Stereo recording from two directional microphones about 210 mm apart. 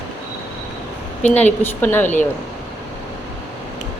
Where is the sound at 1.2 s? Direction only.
5° left (ahead or behind).